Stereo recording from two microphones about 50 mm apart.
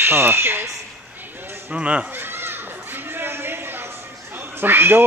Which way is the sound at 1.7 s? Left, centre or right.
Right.